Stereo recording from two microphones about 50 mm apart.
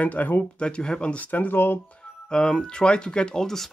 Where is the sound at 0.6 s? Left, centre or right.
Left.